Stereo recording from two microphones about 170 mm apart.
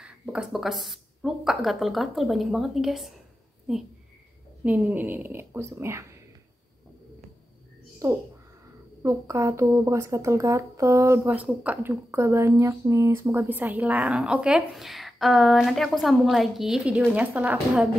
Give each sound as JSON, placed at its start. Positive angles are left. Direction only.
{"t": 0.0, "sound": "speech", "side_deg": -5}
{"t": 4.6, "sound": "speech", "side_deg": -10}
{"t": 8.0, "sound": "speech", "side_deg": -20}